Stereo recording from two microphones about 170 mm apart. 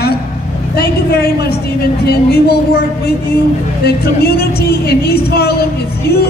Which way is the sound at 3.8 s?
65° left (ahead or behind).